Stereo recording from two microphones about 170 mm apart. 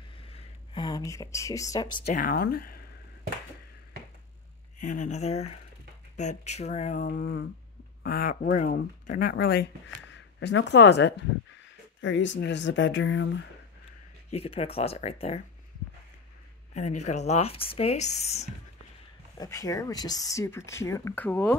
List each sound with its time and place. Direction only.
0.3 s speech: 25° left (ahead or behind)
2.1 s speech: 60° left (ahead or behind)
4.7 s speech: 45° left (ahead or behind)
9.3 s speech: 70° left (ahead or behind); by 13.3 s 90° left
14.3 s speech: 35° left (ahead or behind)
16.7 s speech: 45° left (ahead or behind)
19.3 s speech: 20° left (ahead or behind)